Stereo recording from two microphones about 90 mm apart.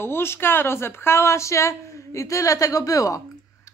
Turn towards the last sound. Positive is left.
turn(degrees=40)  # may be behind; listen again after turning